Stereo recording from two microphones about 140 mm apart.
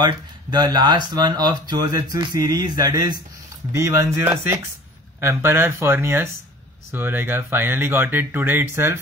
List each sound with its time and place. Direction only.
0.0 s speech: 30° right (ahead or behind)